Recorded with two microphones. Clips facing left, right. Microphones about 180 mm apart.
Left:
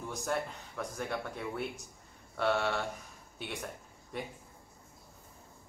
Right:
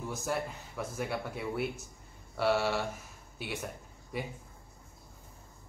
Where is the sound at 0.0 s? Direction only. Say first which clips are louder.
Right 1 dB; 5° right (ahead or behind).